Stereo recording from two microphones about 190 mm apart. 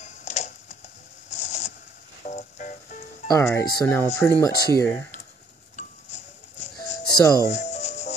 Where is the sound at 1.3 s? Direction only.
35° left (ahead or behind).